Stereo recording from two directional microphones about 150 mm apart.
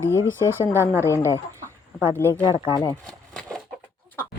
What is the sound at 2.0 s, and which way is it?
Speech, 15° right (ahead or behind).